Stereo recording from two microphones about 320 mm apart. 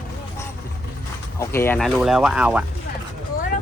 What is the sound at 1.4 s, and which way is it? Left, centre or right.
Speech, centre.